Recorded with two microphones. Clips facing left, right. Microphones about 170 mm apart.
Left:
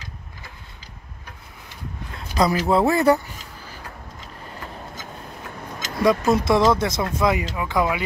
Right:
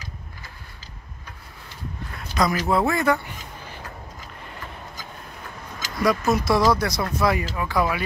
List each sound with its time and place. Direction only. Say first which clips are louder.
2.4 s speech: left 3 dB; 30° left (ahead or behind)
5.9 s speech: left 3 dB; 25° left (ahead or behind)